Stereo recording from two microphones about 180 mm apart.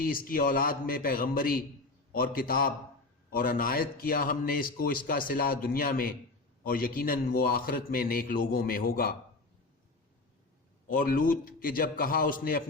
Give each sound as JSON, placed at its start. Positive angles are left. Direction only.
{"t": 0.0, "sound": "a man's voice", "side_deg": 55}
{"t": 10.8, "sound": "a man's voice", "side_deg": 50}